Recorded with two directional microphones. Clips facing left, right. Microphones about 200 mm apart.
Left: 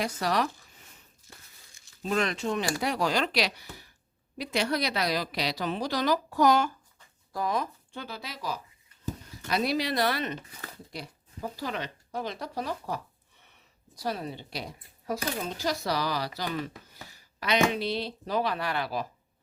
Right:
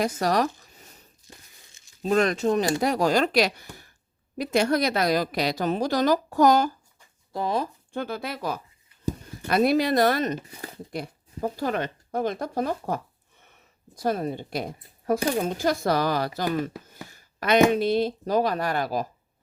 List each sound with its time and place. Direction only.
0.2 s zipper: 45° right (ahead or behind)
2.0 s speech: 40° right (ahead or behind)
7.3 s speech: 30° right (ahead or behind)
7.9 s speech: 50° right (ahead or behind)
10.5 s speech: 30° right (ahead or behind)
10.9 s speech: 50° right (ahead or behind)